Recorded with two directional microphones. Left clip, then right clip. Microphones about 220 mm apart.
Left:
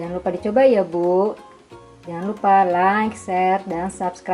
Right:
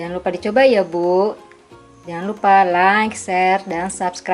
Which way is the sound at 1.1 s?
30° left (ahead or behind).